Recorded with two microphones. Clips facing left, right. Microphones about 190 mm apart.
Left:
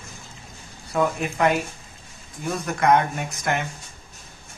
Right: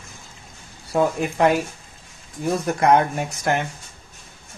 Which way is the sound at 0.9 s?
30° right (ahead or behind).